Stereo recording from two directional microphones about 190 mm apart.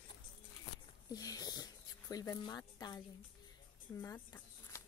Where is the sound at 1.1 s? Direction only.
20° left (ahead or behind).